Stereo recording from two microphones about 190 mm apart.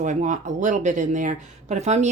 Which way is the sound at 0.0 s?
40° right (ahead or behind).